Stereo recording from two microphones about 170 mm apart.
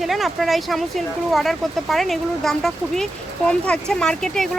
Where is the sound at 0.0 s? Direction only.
Centre (ahead or behind).